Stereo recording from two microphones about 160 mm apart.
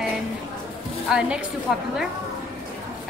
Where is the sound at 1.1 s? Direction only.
5° right (ahead or behind).